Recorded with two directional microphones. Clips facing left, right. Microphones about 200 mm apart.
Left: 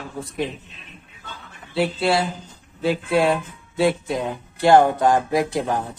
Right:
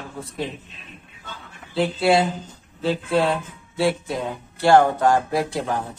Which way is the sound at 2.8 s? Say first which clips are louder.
Left 1 dB; 10° left (ahead or behind).